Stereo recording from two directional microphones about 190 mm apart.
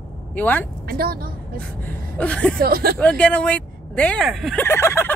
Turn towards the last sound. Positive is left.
turn(degrees=15)  # may be behind; listen again after turning